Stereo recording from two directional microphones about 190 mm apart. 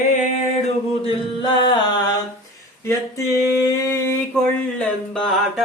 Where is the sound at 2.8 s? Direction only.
15° left (ahead or behind).